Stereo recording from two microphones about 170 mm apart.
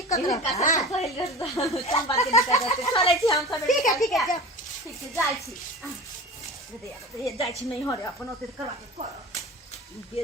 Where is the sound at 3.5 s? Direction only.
Centre (ahead or behind).